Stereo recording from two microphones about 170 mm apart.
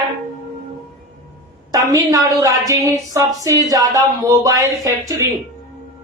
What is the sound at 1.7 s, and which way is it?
A woman's voice, 20° right (ahead or behind).